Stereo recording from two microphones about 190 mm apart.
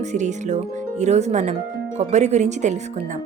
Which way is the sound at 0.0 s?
40° right (ahead or behind).